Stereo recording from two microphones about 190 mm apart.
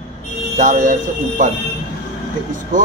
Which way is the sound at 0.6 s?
45° right (ahead or behind).